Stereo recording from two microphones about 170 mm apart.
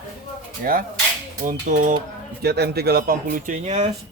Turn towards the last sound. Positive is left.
turn(degrees=-40)  # may be behind; listen again after turning